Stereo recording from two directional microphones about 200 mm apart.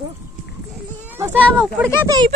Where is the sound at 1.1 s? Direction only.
10° right (ahead or behind).